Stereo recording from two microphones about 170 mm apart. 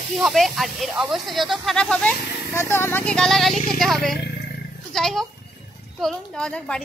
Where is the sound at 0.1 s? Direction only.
Centre (ahead or behind).